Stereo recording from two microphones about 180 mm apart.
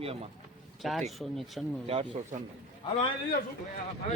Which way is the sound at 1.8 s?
35° right (ahead or behind).